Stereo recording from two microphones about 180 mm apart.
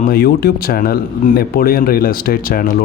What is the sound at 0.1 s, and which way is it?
Speech, 60° left (ahead or behind).